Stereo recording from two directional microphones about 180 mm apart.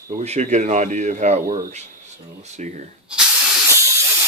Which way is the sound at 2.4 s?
40° right (ahead or behind).